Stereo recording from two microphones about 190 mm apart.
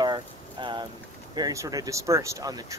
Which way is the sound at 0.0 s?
25° right (ahead or behind).